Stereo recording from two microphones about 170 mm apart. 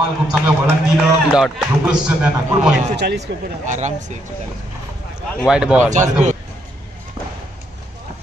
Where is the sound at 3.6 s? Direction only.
45° right (ahead or behind).